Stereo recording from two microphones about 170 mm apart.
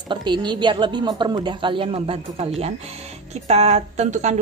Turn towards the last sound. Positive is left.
turn(degrees=-40)  # may be behind; listen again after turning